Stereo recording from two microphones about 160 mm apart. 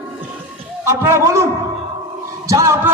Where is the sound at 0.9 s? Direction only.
20° right (ahead or behind).